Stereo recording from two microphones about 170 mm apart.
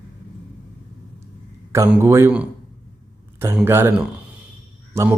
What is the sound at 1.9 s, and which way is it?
Speech, 15° right (ahead or behind).